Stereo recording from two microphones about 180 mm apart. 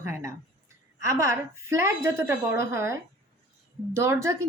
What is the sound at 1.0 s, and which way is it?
A woman's voice, 15° right (ahead or behind).